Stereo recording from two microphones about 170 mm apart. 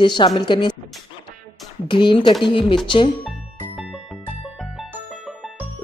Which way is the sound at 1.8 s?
30° left (ahead or behind).